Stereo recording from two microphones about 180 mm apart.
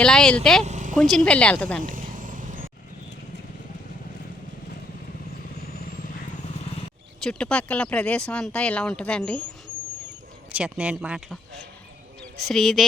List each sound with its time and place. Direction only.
0.0 s speech: 5° left (ahead or behind)
0.6 s vehicle: 40° right (ahead or behind)
0.9 s a woman's voice: centre (ahead or behind)
1.8 s vehicle: 50° right (ahead or behind)
7.2 s speech: 5° left (ahead or behind)
10.5 s speech: 5° right (ahead or behind)